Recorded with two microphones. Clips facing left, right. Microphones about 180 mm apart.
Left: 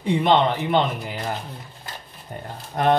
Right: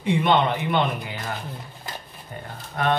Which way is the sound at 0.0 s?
35° left (ahead or behind).